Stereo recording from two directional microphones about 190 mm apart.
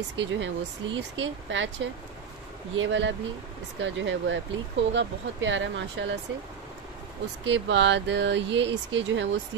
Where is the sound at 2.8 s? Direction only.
75° right (ahead or behind).